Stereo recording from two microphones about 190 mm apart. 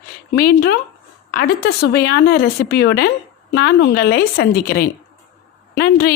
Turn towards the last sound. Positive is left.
turn(degrees=55)  # may be behind; listen again after turning